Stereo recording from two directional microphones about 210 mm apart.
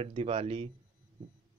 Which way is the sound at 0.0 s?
30° right (ahead or behind).